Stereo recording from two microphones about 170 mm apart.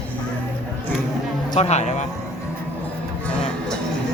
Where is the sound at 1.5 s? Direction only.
40° left (ahead or behind).